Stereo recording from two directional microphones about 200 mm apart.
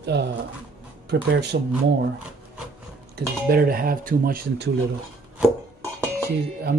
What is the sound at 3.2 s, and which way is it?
Speech, 60° right (ahead or behind).